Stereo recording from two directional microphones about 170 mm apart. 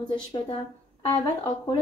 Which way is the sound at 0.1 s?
30° left (ahead or behind).